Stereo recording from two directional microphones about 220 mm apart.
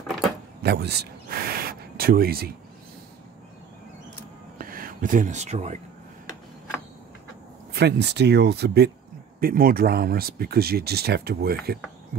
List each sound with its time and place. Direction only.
0.6 s speech: 50° right (ahead or behind)
4.6 s speech: 40° right (ahead or behind)
7.7 s speech: 50° right (ahead or behind)